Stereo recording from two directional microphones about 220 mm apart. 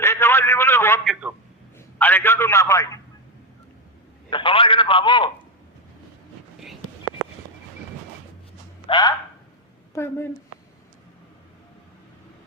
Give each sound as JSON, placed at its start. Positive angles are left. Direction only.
{"t": 0.0, "sound": "a sound", "side_deg": 10}
{"t": 1.0, "sound": "speech", "side_deg": 0}
{"t": 2.0, "sound": "a man's voice", "side_deg": 10}
{"t": 4.3, "sound": "a man's voice", "side_deg": 20}
{"t": 7.2, "sound": "a sound", "side_deg": -15}
{"t": 8.9, "sound": "a man's voice", "side_deg": 20}